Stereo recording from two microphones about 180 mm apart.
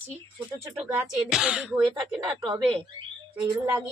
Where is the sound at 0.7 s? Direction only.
5° right (ahead or behind).